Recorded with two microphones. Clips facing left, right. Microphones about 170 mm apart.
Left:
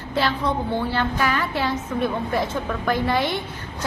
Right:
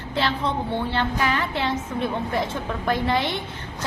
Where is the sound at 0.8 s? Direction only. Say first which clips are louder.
Left 1 dB; 25° right (ahead or behind).